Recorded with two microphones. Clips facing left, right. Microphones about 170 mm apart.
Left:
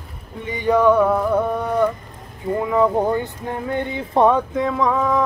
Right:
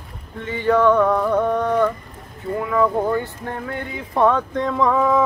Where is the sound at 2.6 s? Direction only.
20° left (ahead or behind).